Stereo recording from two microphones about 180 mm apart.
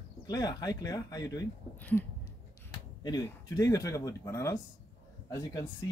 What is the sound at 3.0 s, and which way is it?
Speech, 20° left (ahead or behind).